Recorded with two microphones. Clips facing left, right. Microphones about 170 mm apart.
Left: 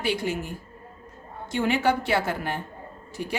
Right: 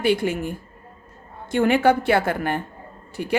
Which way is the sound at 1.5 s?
55° right (ahead or behind).